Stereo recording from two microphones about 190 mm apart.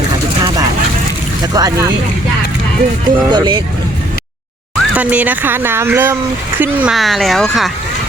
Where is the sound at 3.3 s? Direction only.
25° right (ahead or behind).